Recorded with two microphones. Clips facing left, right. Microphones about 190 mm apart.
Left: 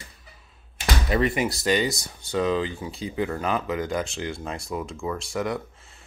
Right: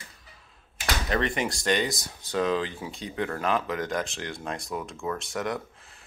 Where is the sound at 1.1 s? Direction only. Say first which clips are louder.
Left 4 dB; 5° left (ahead or behind).